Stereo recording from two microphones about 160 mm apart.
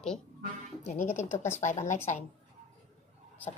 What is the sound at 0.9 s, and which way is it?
A woman's voice, 45° left (ahead or behind).